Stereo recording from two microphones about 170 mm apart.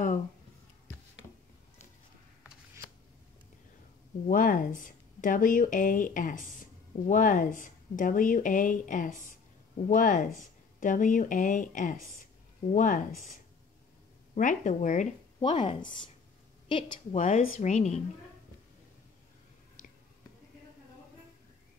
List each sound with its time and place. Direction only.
4.3 s speech: 50° left (ahead or behind)
14.3 s speech: 50° left (ahead or behind)
15.6 s a woman's voice: 30° left (ahead or behind)
17.2 s speech: 50° left (ahead or behind)